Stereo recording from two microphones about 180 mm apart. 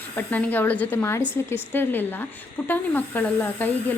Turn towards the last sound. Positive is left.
turn(degrees=10)  # may be behind; listen again after turning